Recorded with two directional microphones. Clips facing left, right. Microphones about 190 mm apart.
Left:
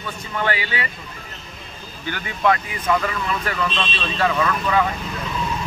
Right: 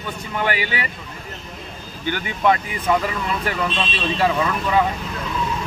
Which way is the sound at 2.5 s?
15° right (ahead or behind).